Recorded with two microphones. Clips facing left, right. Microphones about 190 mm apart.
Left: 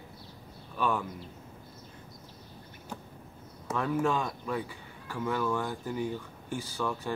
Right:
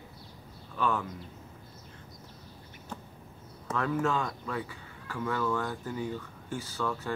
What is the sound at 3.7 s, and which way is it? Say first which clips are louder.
Speech: left 1 dB; 15° left (ahead or behind).